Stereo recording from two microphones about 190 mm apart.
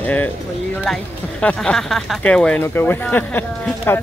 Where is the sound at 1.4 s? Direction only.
5° left (ahead or behind).